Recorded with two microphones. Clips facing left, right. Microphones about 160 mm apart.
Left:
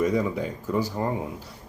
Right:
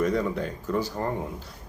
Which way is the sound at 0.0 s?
10° left (ahead or behind).